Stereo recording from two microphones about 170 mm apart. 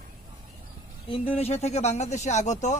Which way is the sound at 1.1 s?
35° left (ahead or behind).